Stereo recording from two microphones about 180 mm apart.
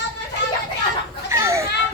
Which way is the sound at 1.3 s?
15° right (ahead or behind).